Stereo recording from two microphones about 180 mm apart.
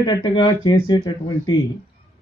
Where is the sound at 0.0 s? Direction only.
25° left (ahead or behind).